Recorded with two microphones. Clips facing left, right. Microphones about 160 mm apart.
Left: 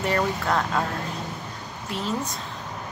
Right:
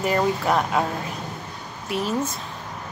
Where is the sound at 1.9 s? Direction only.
15° right (ahead or behind).